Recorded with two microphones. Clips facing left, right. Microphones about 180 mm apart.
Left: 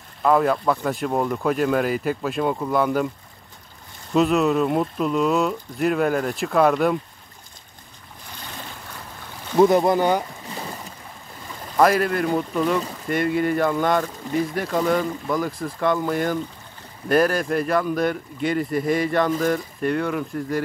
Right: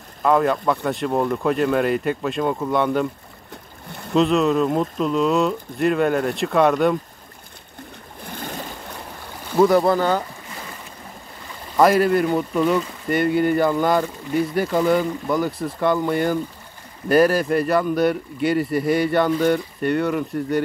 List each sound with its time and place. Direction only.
0.2 s speech: centre (ahead or behind)
4.1 s speech: 5° left (ahead or behind)
8.3 s boat: 50° right (ahead or behind)
9.6 s speech: 20° left (ahead or behind)
11.7 s speech: centre (ahead or behind)